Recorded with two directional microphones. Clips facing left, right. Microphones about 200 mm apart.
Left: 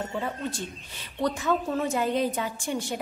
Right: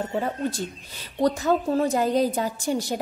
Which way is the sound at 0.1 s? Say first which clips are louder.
Right 5 dB; 40° right (ahead or behind).